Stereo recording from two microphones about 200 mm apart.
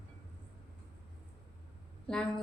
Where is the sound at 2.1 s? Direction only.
5° left (ahead or behind).